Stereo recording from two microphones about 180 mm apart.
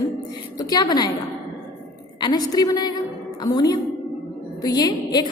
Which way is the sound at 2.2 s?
20° left (ahead or behind).